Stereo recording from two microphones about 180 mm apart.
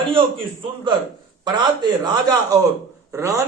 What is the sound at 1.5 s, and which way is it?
A man's voice, 25° right (ahead or behind).